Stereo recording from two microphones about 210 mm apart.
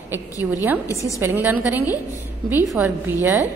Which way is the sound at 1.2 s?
10° right (ahead or behind).